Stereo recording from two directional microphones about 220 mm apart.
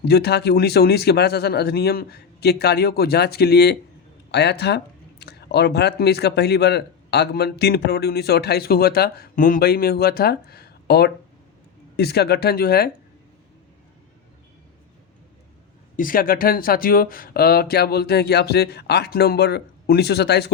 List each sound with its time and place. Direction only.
0.0 s speech: 45° left (ahead or behind)
16.0 s speech: 40° left (ahead or behind)